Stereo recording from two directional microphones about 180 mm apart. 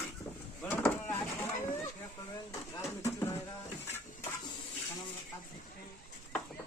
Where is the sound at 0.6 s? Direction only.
10° left (ahead or behind).